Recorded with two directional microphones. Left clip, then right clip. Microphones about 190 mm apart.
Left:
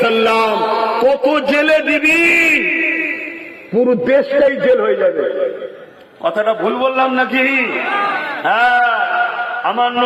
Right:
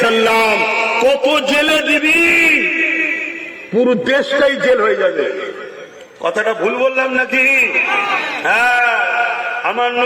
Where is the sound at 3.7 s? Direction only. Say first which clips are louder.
Left 1 dB; 40° left (ahead or behind).